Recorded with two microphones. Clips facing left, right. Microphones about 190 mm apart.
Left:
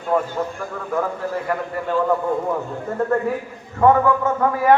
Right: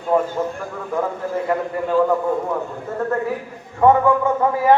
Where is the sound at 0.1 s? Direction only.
15° right (ahead or behind).